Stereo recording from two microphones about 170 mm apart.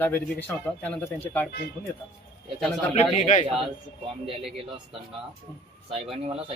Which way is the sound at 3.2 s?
45° left (ahead or behind).